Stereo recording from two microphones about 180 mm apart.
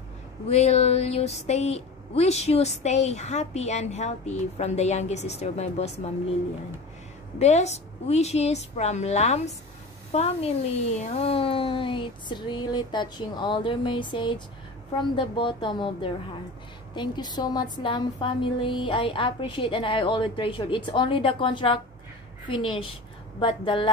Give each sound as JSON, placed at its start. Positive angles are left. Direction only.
{"t": 0.5, "sound": "speech", "side_deg": 35}
{"t": 7.3, "sound": "a woman's voice", "side_deg": 40}